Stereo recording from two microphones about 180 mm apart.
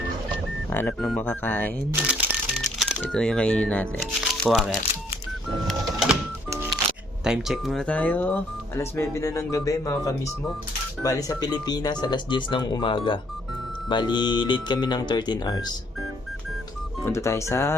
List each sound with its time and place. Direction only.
0.7 s speech: 10° left (ahead or behind)
1.9 s speech: 5° right (ahead or behind)
2.6 s music: centre (ahead or behind)
3.0 s speech: 5° left (ahead or behind)
4.0 s speech: 5° right (ahead or behind)
5.6 s printer: centre (ahead or behind)
7.3 s speech: centre (ahead or behind); by 15.6 s 20° left (ahead or behind)
17.0 s speech: 15° left (ahead or behind)